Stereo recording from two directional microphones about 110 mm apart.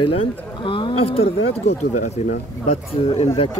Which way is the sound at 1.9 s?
90° left.